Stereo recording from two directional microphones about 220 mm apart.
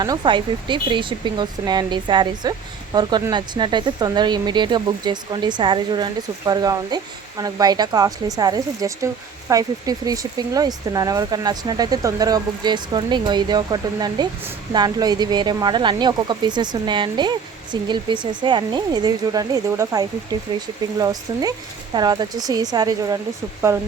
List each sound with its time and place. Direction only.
0.0 s speech: 20° right (ahead or behind)